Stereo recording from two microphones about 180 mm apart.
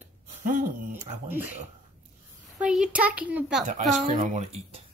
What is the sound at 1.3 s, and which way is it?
Speech, 10° right (ahead or behind).